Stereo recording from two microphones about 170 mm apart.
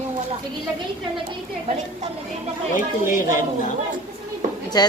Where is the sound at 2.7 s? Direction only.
50° left (ahead or behind).